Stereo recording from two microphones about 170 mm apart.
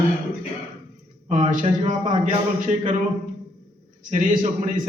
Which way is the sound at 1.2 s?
50° right (ahead or behind).